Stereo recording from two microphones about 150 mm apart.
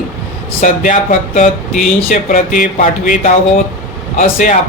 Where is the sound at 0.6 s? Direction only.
55° left (ahead or behind).